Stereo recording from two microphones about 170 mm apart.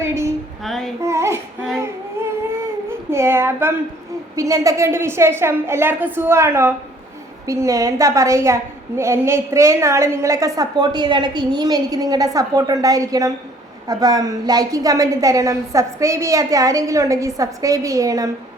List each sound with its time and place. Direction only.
0.0 s a sound: 15° right (ahead or behind)
0.6 s female singing: centre (ahead or behind)
1.0 s child singing: 15° right (ahead or behind)
3.1 s a woman's voice: 15° right (ahead or behind)